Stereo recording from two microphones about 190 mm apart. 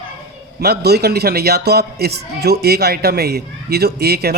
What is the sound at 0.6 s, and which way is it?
A man's voice, 60° right (ahead or behind).